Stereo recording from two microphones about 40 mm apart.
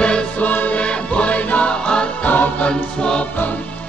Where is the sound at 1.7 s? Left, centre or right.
Left.